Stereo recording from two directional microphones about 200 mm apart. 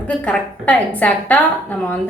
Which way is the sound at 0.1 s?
5° left (ahead or behind).